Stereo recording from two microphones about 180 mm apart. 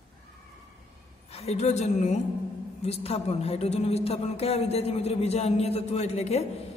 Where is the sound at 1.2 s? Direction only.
35° left (ahead or behind).